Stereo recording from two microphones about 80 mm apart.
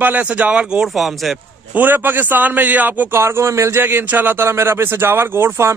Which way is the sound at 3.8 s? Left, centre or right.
Right.